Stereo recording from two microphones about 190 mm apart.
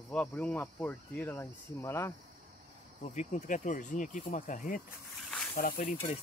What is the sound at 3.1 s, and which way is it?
Speech, 40° left (ahead or behind).